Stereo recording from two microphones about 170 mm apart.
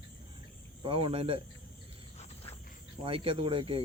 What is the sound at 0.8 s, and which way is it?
Speech, 30° right (ahead or behind).